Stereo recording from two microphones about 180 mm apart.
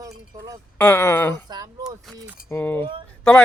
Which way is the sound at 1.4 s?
20° right (ahead or behind).